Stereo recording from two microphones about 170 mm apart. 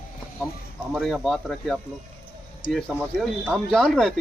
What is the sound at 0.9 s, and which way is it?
Speech, centre (ahead or behind).